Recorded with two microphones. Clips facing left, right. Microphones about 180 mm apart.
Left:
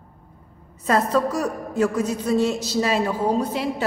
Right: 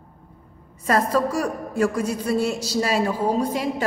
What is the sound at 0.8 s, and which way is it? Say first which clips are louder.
A woman's voice: even; 10° right (ahead or behind).